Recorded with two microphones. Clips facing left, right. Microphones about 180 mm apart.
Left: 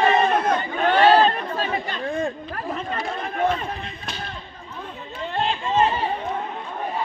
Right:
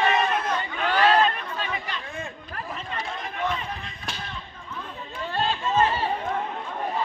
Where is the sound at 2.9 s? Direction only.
55° left (ahead or behind).